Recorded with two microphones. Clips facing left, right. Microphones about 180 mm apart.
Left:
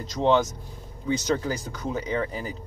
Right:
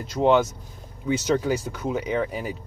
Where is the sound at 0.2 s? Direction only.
15° right (ahead or behind).